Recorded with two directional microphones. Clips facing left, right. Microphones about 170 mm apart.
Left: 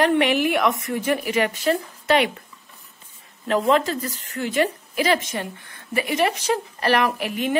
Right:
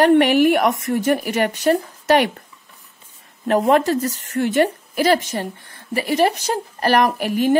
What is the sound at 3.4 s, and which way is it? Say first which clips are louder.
A woman's voice: right 4 dB; 50° right (ahead or behind).